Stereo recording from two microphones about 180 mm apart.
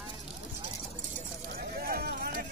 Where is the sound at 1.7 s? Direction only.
55° right (ahead or behind).